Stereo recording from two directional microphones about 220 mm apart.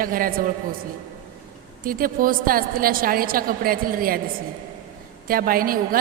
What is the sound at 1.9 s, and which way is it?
A woman's voice, 40° right (ahead or behind).